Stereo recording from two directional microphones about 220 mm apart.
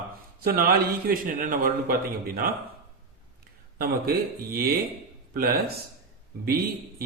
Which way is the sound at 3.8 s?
45° right (ahead or behind).